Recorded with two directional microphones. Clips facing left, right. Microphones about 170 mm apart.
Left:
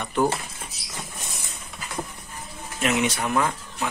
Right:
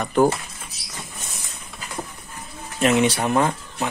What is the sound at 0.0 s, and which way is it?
Speech, 45° right (ahead or behind).